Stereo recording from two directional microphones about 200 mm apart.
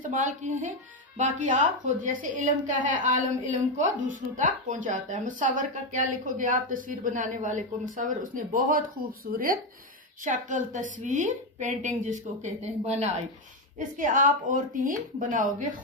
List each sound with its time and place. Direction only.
0.0 s speech: 40° right (ahead or behind)